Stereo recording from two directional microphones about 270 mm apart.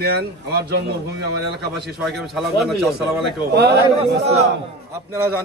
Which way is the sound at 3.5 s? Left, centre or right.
Right.